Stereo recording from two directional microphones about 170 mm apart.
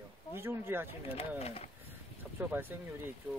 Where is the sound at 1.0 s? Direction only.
35° left (ahead or behind).